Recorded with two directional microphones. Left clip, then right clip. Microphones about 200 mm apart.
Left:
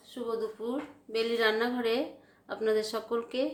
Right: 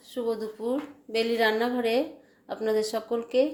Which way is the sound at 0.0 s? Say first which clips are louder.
Right 4 dB; 20° right (ahead or behind).